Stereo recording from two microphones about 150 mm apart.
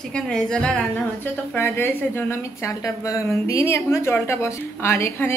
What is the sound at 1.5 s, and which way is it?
A woman's voice, 15° left (ahead or behind).